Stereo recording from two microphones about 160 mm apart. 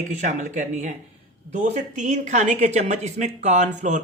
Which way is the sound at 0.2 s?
50° right (ahead or behind).